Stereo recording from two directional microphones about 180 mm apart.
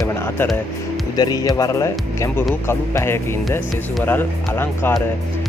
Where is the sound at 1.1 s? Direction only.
20° left (ahead or behind).